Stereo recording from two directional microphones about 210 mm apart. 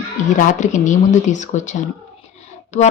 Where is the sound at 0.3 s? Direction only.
35° left (ahead or behind).